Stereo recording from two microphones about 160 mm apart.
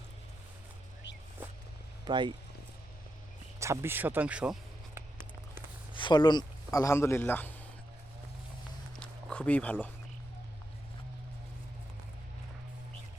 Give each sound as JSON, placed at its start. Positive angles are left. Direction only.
{"t": 2.0, "sound": "speech", "side_deg": -30}
{"t": 3.6, "sound": "speech", "side_deg": -15}
{"t": 5.9, "sound": "speech", "side_deg": 30}
{"t": 9.0, "sound": "a sound", "side_deg": 5}